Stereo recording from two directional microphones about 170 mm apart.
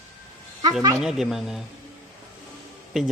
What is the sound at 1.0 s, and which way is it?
Speech, centre (ahead or behind).